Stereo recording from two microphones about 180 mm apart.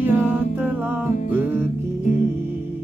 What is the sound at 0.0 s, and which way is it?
Humming, 10° right (ahead or behind).